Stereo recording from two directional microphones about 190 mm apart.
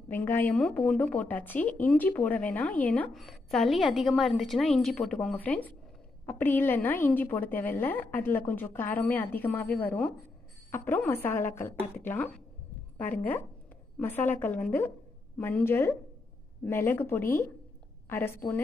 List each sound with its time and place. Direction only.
0.1 s a woman's voice: 10° left (ahead or behind)